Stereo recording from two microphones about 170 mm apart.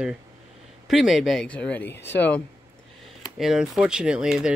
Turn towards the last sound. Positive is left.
turn(degrees=-5)  # may be behind; listen again after turning